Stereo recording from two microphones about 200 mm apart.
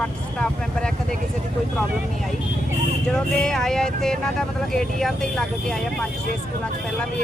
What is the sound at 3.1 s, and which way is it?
Speech, 5° left (ahead or behind).